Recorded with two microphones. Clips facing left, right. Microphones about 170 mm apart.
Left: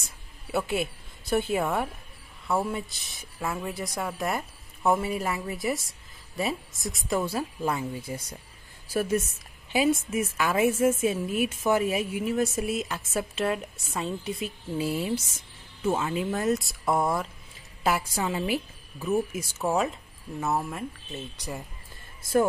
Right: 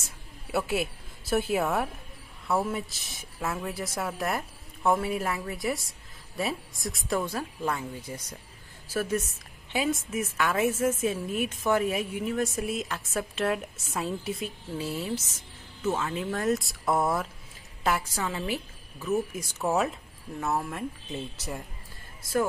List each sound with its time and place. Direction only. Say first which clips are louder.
0.5 s a woman's voice: even; centre (ahead or behind)
14.8 s a woman's voice: left 4 dB; 10° left (ahead or behind)
17.8 s a woman's voice: left 2 dB; 10° left (ahead or behind)
19.6 s speech: even; centre (ahead or behind)